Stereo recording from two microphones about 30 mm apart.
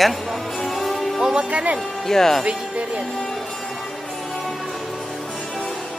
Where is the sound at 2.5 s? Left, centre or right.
Right.